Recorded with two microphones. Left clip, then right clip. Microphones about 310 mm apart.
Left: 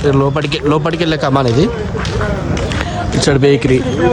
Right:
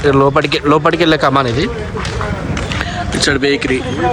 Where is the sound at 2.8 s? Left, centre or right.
Left.